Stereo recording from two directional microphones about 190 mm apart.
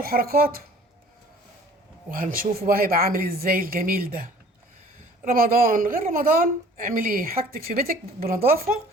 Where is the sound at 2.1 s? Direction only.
45° right (ahead or behind).